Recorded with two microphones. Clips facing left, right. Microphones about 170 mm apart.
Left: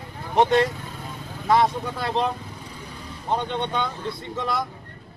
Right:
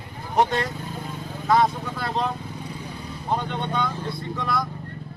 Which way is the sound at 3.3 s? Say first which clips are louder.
Left 1 dB; 25° left (ahead or behind).